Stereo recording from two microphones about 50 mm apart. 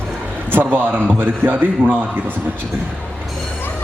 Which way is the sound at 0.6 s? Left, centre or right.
Right.